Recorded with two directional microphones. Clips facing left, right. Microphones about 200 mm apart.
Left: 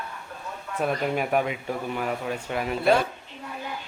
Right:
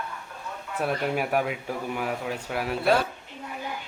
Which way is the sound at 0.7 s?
5° right (ahead or behind).